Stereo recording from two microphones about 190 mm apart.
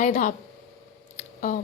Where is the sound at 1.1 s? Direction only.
45° left (ahead or behind).